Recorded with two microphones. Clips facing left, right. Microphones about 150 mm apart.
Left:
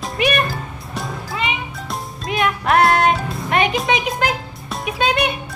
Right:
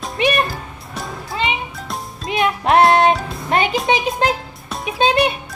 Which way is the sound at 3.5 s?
30° right (ahead or behind).